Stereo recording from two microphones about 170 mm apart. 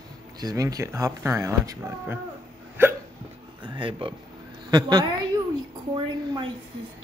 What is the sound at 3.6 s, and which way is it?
Speech, 30° right (ahead or behind).